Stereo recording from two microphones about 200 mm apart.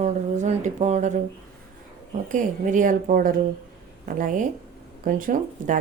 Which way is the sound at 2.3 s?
40° right (ahead or behind).